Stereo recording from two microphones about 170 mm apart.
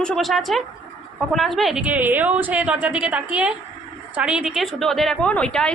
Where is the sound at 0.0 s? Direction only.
Centre (ahead or behind).